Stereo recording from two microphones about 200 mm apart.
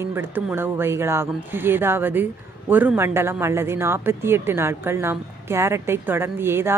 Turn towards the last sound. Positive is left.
turn(degrees=-10)  # may be behind; listen again after turning